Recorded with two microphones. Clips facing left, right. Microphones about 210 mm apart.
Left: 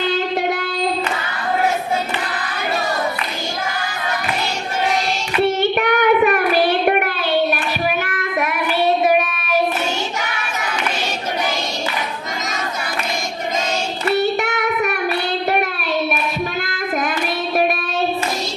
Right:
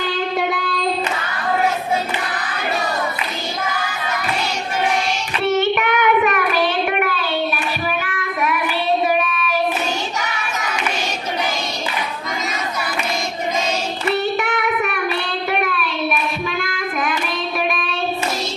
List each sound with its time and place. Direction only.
5.7 s child singing: 35° left (ahead or behind)
14.2 s child singing: 40° left (ahead or behind)
17.6 s child singing: 40° left (ahead or behind)